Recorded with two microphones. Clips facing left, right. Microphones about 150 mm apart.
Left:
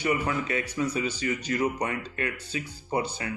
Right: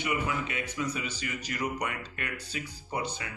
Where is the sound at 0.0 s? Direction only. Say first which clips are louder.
Left 4 dB; 40° left (ahead or behind).